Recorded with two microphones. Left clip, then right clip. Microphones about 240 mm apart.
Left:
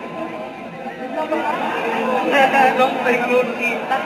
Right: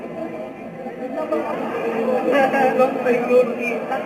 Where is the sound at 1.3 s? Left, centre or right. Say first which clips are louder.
Left 3 dB; centre.